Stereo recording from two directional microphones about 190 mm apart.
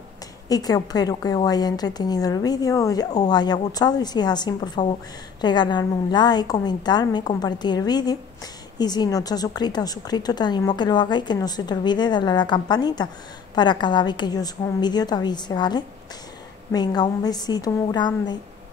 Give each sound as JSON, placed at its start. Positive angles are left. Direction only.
{"t": 0.5, "sound": "a woman's voice", "side_deg": 20}